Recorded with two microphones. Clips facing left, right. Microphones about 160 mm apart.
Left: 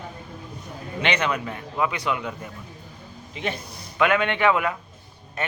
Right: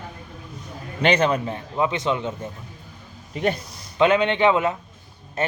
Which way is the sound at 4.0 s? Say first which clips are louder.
Right 3 dB; 20° right (ahead or behind).